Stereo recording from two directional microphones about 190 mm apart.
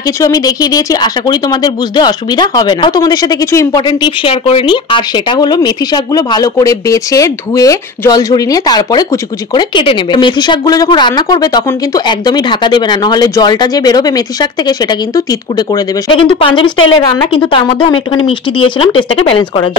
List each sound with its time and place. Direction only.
0.2 s speech: 20° left (ahead or behind)
16.7 s a woman's voice: 90° left
17.3 s speech: 25° left (ahead or behind)